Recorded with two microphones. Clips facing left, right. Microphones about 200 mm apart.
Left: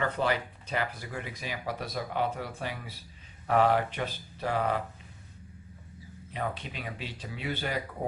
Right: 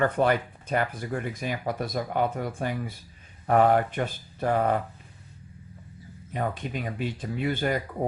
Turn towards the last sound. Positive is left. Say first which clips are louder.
# right 7 dB
turn(degrees=-50)  # may be behind; listen again after turning